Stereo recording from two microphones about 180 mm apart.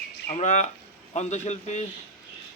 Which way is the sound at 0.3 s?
40° left (ahead or behind).